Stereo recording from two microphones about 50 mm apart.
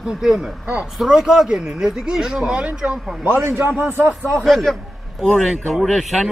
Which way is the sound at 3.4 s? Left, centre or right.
Right.